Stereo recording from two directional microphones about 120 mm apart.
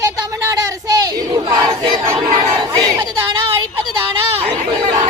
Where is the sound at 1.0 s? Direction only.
30° right (ahead or behind).